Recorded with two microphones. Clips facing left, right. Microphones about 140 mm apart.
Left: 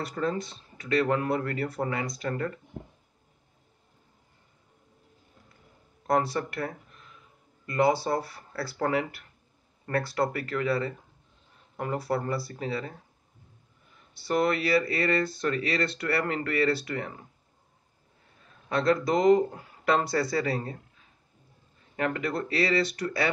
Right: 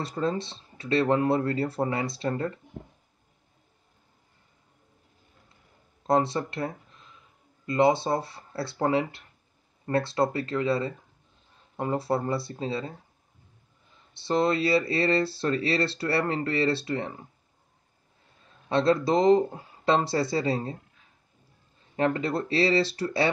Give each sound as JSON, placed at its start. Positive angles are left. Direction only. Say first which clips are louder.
{"t": 0.0, "sound": "speech", "louder": "right 1 dB", "side_deg": -25}
{"t": 6.0, "sound": "speech", "louder": "right 2 dB", "side_deg": -25}
{"t": 14.1, "sound": "speech", "louder": "right 1 dB", "side_deg": -25}
{"t": 18.7, "sound": "speech", "louder": "right 2 dB", "side_deg": -25}
{"t": 21.9, "sound": "speech", "louder": "right 3 dB", "side_deg": -30}